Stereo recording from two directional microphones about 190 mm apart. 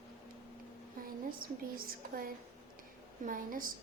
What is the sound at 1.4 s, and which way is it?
Speech, 50° right (ahead or behind).